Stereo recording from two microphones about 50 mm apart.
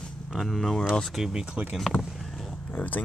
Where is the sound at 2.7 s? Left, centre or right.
Left.